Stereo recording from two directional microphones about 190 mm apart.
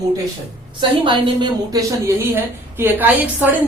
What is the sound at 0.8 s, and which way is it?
A man's voice, 25° right (ahead or behind).